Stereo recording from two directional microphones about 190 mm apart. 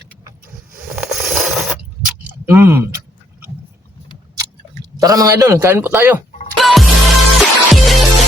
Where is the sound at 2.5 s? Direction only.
10° right (ahead or behind).